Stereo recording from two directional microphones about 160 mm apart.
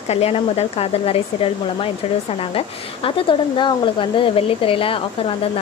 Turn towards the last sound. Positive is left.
turn(degrees=35)  # may be behind; listen again after turning